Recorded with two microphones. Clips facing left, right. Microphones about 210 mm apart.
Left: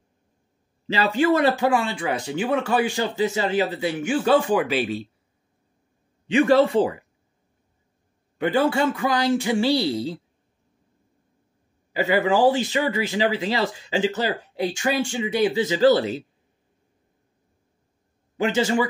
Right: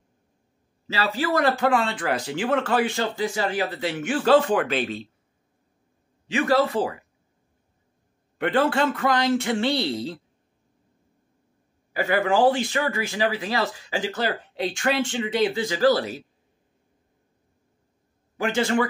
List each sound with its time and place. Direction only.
1.0 s speech: 25° left (ahead or behind)
1.6 s speech: 10° left (ahead or behind)
4.2 s speech: 10° left (ahead or behind)
6.3 s speech: 25° left (ahead or behind)
8.4 s speech: 10° left (ahead or behind)
11.9 s speech: 20° left (ahead or behind)
14.6 s speech: 10° left (ahead or behind)
18.4 s speech: 20° left (ahead or behind)